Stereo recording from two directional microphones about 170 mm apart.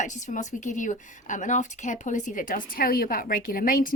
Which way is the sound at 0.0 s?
45° left (ahead or behind).